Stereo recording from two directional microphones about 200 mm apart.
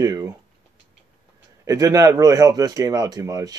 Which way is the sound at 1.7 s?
15° right (ahead or behind).